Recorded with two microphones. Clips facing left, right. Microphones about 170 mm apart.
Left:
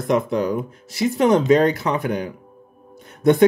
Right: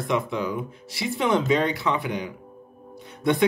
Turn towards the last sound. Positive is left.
turn(degrees=45)  # may be behind; listen again after turning